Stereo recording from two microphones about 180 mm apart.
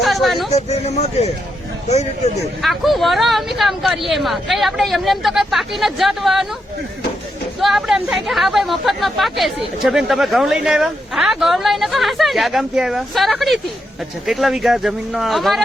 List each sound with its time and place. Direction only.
0.0 s speech: centre (ahead or behind)
0.5 s speech: 35° left (ahead or behind)
2.6 s speech: centre (ahead or behind)
7.6 s speech: centre (ahead or behind)